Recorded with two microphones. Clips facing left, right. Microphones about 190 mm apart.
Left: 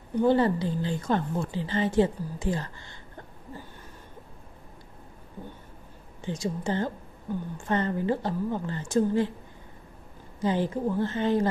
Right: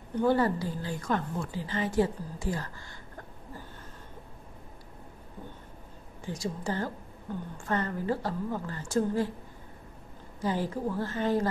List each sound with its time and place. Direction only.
0.1 s a woman's voice: 20° left (ahead or behind)
6.2 s a woman's voice: 20° left (ahead or behind)
10.4 s a woman's voice: 20° left (ahead or behind)